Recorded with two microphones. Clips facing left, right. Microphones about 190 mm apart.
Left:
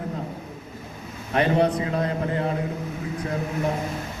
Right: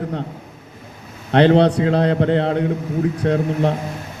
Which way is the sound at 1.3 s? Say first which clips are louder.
Right 8 dB; 80° right.